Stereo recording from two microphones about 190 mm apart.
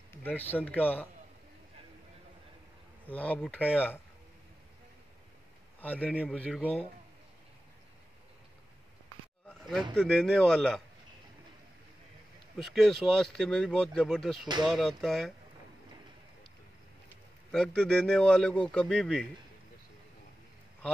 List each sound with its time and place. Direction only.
0.2 s speech: 10° left (ahead or behind)
3.1 s speech: 10° left (ahead or behind)
5.8 s speech: 10° left (ahead or behind)
9.6 s a sound: centre (ahead or behind)
9.9 s speech: centre (ahead or behind)
12.6 s speech: centre (ahead or behind)
17.5 s speech: 5° left (ahead or behind)